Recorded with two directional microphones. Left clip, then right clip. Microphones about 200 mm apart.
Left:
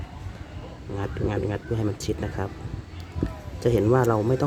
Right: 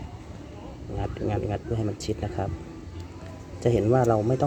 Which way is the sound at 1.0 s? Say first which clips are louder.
Left 1 dB; 20° left (ahead or behind).